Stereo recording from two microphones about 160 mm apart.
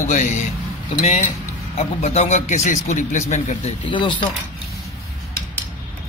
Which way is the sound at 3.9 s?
30° left (ahead or behind).